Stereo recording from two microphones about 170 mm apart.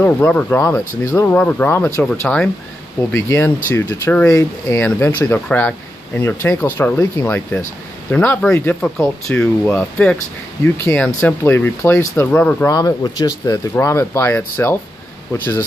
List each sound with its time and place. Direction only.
0.0 s speech: 10° left (ahead or behind)
12.7 s speech: 20° left (ahead or behind)